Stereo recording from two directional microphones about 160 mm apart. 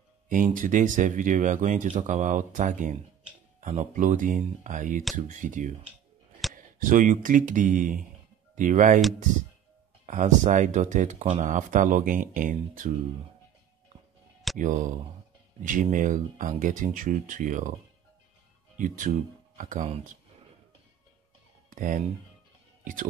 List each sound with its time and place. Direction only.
0.3 s speech: 55° right (ahead or behind)
10.0 s speech: 50° right (ahead or behind)
11.1 s speech: 35° right (ahead or behind)
11.4 s speech: 55° right (ahead or behind)
14.6 s speech: 55° right (ahead or behind)
18.8 s speech: 55° right (ahead or behind)
21.6 s music: 55° right (ahead or behind)